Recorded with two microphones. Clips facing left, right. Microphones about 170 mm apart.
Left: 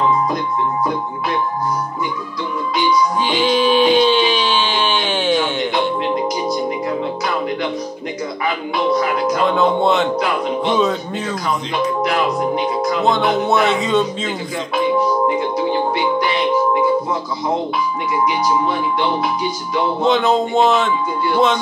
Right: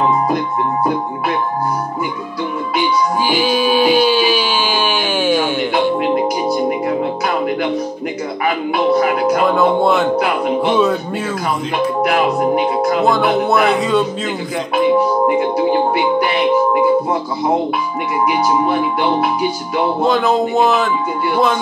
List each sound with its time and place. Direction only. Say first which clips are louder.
3.2 s music: right 1 dB; 10° right (ahead or behind)
9.0 s music: right 4 dB; 60° right (ahead or behind)
9.5 s speech: right 2 dB; 5° right (ahead or behind)
12.0 s speech: right 5 dB; 55° right (ahead or behind)
13.0 s speech: even; centre (ahead or behind)
15.2 s music: right 4 dB; 55° right (ahead or behind)
18.2 s music: right 3 dB; 55° right (ahead or behind)
20.0 s speech: even; centre (ahead or behind)